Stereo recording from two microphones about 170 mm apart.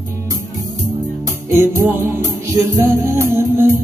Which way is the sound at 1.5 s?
15° right (ahead or behind).